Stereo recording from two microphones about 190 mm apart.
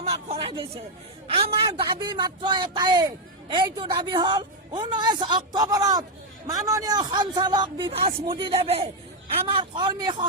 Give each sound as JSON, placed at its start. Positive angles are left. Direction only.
{"t": 0.0, "sound": "a man's voice", "side_deg": -30}